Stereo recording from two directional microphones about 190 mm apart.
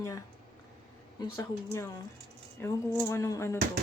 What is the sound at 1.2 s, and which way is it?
Speech, 15° left (ahead or behind).